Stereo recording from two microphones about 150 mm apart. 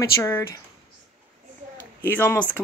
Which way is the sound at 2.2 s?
10° left (ahead or behind).